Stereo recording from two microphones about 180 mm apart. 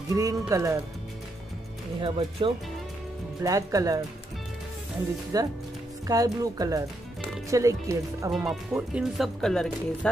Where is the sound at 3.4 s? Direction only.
20° right (ahead or behind).